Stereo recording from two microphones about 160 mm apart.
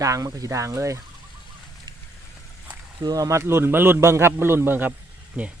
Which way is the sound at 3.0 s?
20° right (ahead or behind).